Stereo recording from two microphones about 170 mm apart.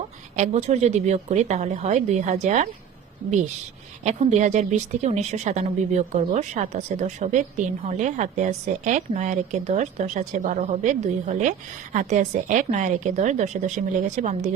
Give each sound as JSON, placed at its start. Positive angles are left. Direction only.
{"t": 0.3, "sound": "a woman's voice", "side_deg": -45}